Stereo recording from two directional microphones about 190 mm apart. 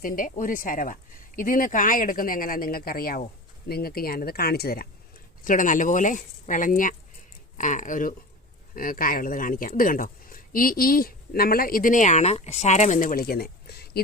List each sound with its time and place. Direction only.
0.0 s speech: 45° left (ahead or behind)
5.5 s speech: 45° left (ahead or behind)